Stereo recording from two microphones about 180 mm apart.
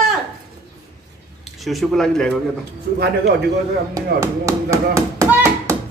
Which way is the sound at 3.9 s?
15° right (ahead or behind).